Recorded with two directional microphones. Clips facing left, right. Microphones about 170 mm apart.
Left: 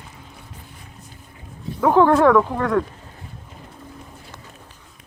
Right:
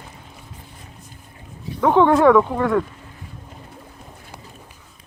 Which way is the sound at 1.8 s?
5° left (ahead or behind).